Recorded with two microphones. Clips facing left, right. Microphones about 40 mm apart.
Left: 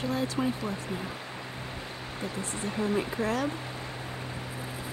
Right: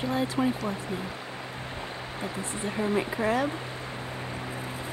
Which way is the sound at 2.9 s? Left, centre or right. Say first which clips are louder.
Right 3 dB; right.